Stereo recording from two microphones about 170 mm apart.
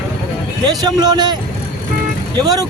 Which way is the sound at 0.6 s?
25° right (ahead or behind).